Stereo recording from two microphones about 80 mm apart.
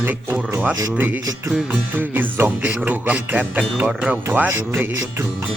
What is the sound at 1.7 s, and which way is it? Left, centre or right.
Music, right.